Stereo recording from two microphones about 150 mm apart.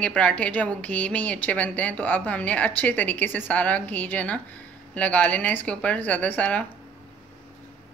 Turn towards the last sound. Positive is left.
turn(degrees=10)  # may be behind; listen again after turning